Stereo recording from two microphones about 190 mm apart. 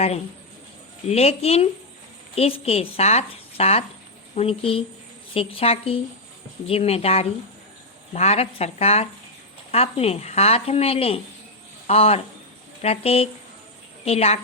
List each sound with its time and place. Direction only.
1.1 s speech: 35° left (ahead or behind)